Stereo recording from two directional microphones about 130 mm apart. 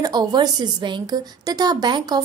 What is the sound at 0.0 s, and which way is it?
A woman's voice, 30° right (ahead or behind).